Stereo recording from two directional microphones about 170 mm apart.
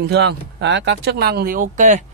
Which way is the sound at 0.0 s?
80° right.